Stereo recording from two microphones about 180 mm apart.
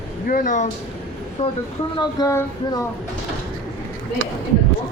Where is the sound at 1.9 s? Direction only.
15° left (ahead or behind).